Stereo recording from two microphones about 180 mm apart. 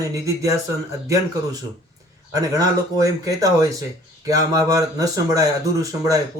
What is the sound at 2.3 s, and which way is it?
Speech, 20° right (ahead or behind).